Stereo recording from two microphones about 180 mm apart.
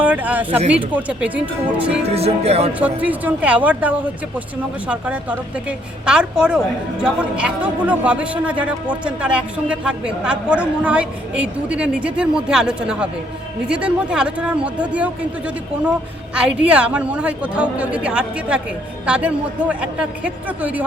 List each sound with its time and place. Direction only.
0.0 s a man's voice: 10° right (ahead or behind)
2.0 s speech: 35° right (ahead or behind)
2.7 s a man's voice: 10° right (ahead or behind)